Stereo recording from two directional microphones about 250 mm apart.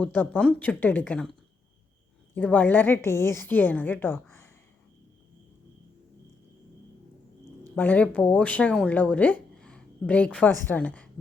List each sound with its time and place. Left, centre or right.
0.0 s a woman's voice: centre
2.3 s a woman's voice: centre
7.8 s speech: centre